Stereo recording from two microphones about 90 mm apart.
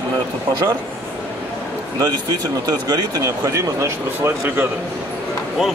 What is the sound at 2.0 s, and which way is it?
Speech, 45° right (ahead or behind).